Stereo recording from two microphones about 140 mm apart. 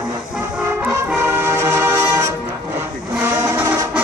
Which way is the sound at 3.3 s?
20° right (ahead or behind).